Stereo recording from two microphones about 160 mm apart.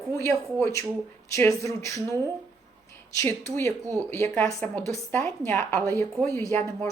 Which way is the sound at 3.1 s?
15° left (ahead or behind).